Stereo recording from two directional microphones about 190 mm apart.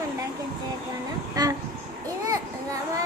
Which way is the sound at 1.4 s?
20° right (ahead or behind).